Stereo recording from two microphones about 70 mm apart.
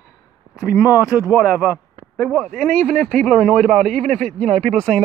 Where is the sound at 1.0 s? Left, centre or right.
Left.